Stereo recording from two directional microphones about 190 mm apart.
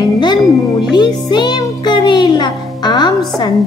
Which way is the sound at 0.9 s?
20° left (ahead or behind).